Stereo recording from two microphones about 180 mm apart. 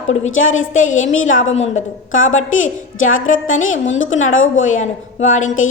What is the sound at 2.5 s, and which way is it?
Speech, 90° left.